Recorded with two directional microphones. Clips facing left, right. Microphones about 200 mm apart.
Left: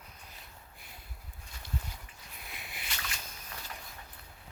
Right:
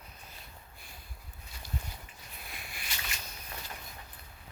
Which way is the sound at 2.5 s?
20° left (ahead or behind).